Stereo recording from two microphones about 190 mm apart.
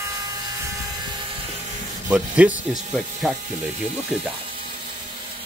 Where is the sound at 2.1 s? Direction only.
5° right (ahead or behind).